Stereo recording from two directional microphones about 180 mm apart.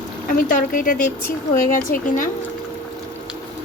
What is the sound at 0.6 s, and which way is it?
Speech, 50° left (ahead or behind).